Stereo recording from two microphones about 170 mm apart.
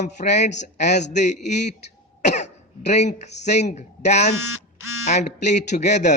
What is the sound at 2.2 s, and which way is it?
Cough, 45° left (ahead or behind).